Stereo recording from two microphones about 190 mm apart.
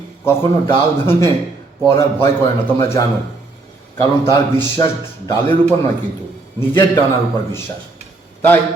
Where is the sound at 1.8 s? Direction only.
25° left (ahead or behind).